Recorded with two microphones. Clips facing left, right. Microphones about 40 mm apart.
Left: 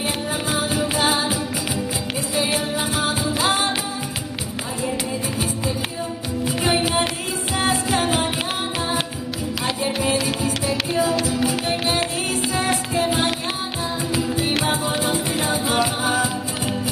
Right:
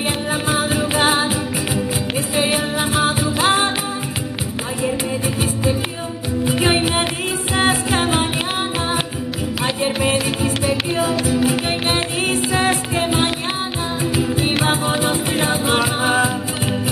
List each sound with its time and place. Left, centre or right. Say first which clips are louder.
0.3 s music: right 5 dB; right
2.3 s music: right 3 dB; right
6.6 s music: right 1 dB; right
9.8 s music: right 3 dB; right
14.9 s music: right 3 dB; right